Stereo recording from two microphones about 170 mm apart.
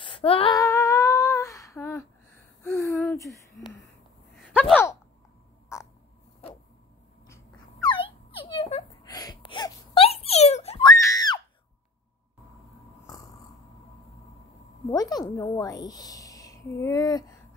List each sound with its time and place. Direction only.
0.0 s female singing: 30° left (ahead or behind)
0.6 s humming: 20° left (ahead or behind)
2.6 s gasp: 15° left (ahead or behind)
4.6 s a sound: 10° left (ahead or behind)
5.7 s crow: 15° left (ahead or behind)
7.8 s wail: 30° left (ahead or behind)
9.0 s wail: 20° left (ahead or behind); by 10.9 s 35° left (ahead or behind)
10.9 s screaming: 20° left (ahead or behind)
14.9 s a sound: 20° left (ahead or behind)